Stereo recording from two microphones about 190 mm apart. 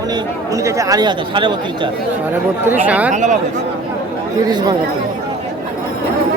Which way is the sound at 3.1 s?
40° right (ahead or behind).